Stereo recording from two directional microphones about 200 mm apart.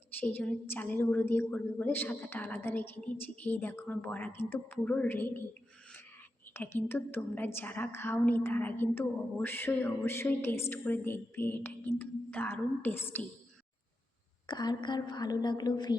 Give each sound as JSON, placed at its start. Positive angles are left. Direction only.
{"t": 0.2, "sound": "a woman's voice", "side_deg": 10}
{"t": 6.5, "sound": "a woman's voice", "side_deg": 10}
{"t": 14.4, "sound": "a woman's voice", "side_deg": 20}